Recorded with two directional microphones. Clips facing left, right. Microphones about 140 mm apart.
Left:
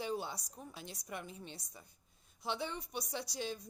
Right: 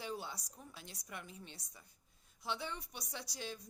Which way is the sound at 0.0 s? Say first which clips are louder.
Left 5 dB; 20° left (ahead or behind).